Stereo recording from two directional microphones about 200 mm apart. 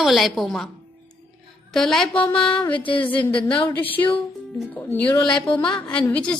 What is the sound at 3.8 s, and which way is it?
Speech, 10° left (ahead or behind).